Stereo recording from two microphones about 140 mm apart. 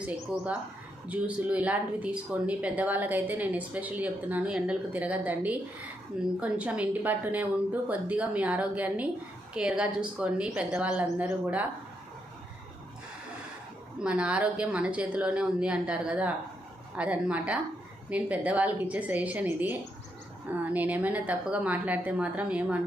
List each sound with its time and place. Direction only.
1.0 s speech: 10° right (ahead or behind)
14.0 s speech: 5° right (ahead or behind)